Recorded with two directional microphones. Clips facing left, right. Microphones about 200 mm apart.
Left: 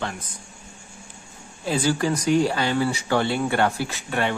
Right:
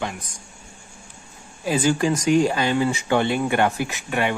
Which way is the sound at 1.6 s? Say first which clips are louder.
Right 2 dB; 15° right (ahead or behind).